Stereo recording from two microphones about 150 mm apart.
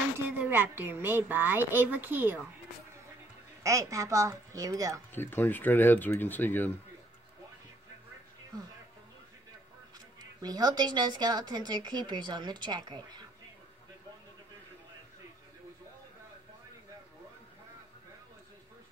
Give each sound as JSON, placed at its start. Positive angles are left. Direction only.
{"t": 0.4, "sound": "a woman's voice", "side_deg": -15}
{"t": 3.6, "sound": "a woman's voice", "side_deg": -20}
{"t": 5.1, "sound": "speech", "side_deg": 15}
{"t": 10.4, "sound": "a woman's voice", "side_deg": -25}